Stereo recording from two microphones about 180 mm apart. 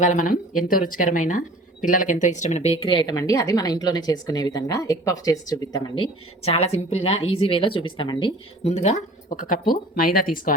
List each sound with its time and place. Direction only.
0.0 s speech: 45° left (ahead or behind); by 8.3 s 25° left (ahead or behind)
8.6 s speech: 40° left (ahead or behind)